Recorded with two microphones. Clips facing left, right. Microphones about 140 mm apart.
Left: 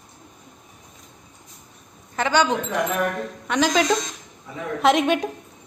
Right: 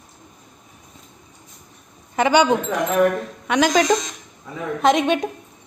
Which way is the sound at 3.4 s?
Centre (ahead or behind).